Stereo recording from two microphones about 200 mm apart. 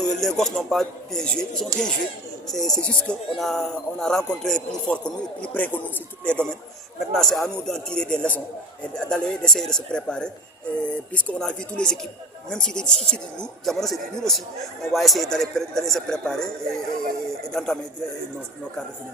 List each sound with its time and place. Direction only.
0.0 s speech: centre (ahead or behind)